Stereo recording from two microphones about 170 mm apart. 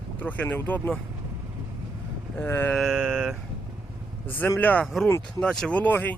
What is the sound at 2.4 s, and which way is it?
Speech, 15° left (ahead or behind).